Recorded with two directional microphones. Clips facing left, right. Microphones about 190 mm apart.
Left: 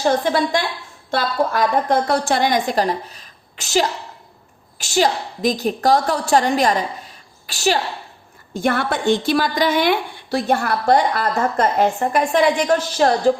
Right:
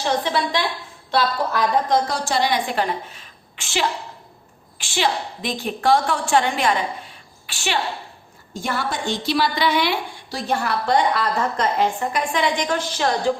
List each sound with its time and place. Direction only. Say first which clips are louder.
0.0 s a woman's voice: left 4 dB; 45° left (ahead or behind)
8.5 s a woman's voice: left 6 dB; 60° left (ahead or behind); by 13.3 s 40° left (ahead or behind)